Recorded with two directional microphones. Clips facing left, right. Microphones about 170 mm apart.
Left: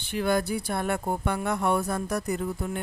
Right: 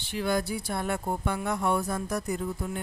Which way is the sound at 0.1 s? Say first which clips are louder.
Left 3 dB; 55° left (ahead or behind).